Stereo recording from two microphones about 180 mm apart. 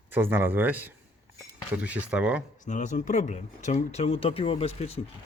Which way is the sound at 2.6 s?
45° left (ahead or behind).